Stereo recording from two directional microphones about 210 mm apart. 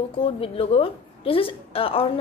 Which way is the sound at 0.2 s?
25° left (ahead or behind).